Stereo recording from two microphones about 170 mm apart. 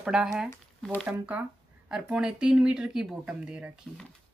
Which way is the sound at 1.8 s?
5° right (ahead or behind).